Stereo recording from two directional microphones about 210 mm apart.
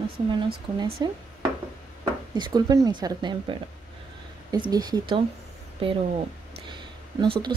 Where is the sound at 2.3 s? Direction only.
20° right (ahead or behind).